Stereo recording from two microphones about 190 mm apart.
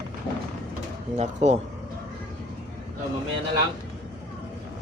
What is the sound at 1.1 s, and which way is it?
Speech, 35° right (ahead or behind).